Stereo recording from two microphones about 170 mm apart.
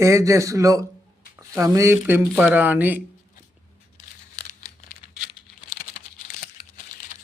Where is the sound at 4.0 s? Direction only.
50° left (ahead or behind).